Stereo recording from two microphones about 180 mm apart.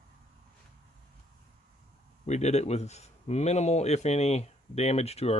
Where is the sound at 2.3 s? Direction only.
40° left (ahead or behind).